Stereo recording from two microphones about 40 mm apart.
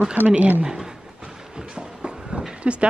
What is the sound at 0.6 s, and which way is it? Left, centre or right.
Speech, centre.